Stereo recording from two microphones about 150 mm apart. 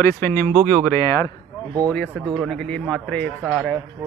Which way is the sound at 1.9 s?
10° left (ahead or behind).